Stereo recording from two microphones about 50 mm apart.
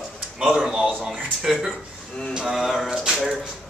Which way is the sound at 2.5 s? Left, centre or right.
Centre.